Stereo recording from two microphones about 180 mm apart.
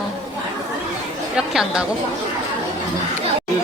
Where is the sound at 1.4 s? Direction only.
5° right (ahead or behind).